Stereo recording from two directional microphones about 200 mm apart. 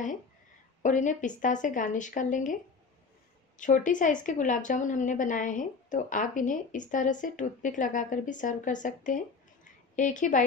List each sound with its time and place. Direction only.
0.8 s a woman's voice: 40° left (ahead or behind)